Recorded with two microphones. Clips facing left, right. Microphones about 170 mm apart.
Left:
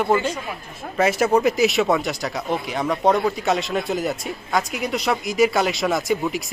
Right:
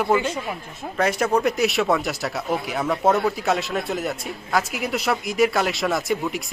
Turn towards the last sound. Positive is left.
turn(degrees=0)  # may be behind; listen again after turning